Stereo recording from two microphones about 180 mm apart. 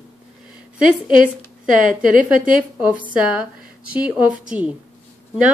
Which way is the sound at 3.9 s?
5° right (ahead or behind).